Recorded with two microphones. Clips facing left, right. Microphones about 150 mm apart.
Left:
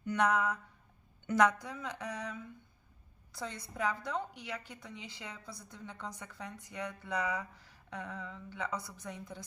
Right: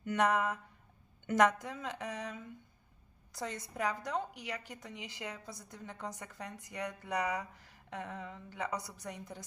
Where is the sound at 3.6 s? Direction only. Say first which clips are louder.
Left 2 dB; 15° right (ahead or behind).